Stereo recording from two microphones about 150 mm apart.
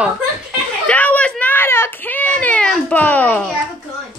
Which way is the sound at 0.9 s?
10° left (ahead or behind).